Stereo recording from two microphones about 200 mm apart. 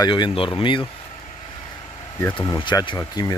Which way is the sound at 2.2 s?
20° left (ahead or behind).